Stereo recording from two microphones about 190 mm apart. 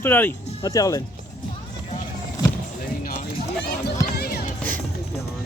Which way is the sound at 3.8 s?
55° left (ahead or behind).